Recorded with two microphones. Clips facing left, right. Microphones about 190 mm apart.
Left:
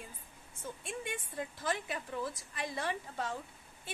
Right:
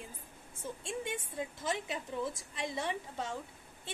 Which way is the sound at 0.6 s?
25° right (ahead or behind).